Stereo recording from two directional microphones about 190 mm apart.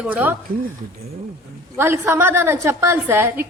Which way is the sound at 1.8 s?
10° right (ahead or behind).